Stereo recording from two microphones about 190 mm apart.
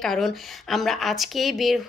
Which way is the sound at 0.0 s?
Centre (ahead or behind).